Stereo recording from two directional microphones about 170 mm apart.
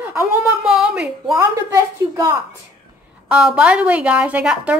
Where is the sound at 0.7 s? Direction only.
5° right (ahead or behind).